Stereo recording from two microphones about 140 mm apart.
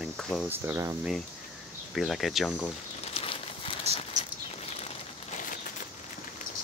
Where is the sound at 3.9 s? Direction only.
50° right (ahead or behind).